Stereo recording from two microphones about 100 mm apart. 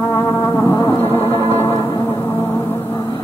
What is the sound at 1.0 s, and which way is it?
Music, 25° left (ahead or behind).